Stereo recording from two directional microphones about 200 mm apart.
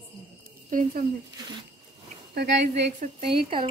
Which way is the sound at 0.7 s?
45° right (ahead or behind).